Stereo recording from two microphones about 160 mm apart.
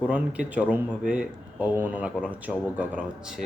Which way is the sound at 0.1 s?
10° right (ahead or behind).